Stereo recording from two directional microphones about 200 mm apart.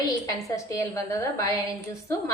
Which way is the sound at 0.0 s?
15° left (ahead or behind).